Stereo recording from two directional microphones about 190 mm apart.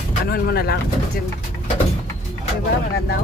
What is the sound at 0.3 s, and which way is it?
Speech, 55° left (ahead or behind).